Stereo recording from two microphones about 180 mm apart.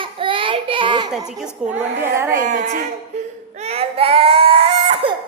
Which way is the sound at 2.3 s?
45° right (ahead or behind).